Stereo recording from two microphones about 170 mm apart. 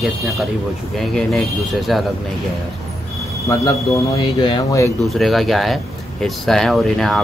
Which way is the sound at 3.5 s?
20° left (ahead or behind).